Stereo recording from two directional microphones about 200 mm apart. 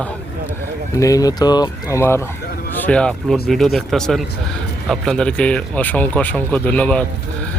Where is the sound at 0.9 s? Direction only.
15° left (ahead or behind).